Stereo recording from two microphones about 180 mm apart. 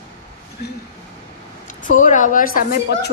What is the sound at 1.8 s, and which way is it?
A woman's voice, 45° left (ahead or behind).